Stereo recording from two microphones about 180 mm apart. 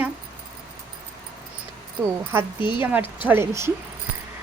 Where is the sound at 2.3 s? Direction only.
10° right (ahead or behind).